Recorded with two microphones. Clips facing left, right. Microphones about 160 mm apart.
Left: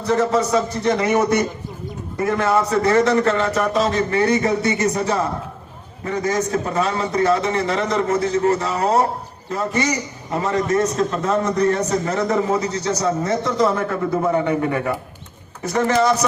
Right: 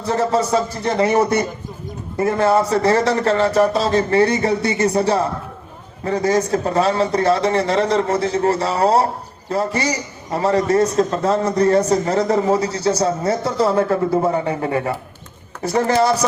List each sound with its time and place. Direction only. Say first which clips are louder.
0.0 s a man's voice: even; 30° right (ahead or behind)